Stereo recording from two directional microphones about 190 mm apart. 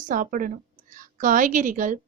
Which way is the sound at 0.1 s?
45° right (ahead or behind).